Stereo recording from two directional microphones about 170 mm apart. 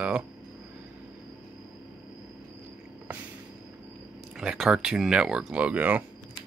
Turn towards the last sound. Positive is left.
turn(degrees=-10)  # may be behind; listen again after turning